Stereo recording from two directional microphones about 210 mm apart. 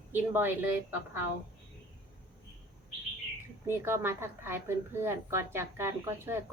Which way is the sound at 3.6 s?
10° right (ahead or behind).